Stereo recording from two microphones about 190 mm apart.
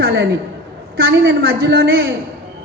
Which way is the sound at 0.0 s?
60° right (ahead or behind).